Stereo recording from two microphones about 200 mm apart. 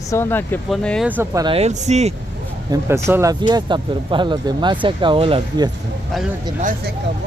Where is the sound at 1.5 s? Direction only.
35° right (ahead or behind).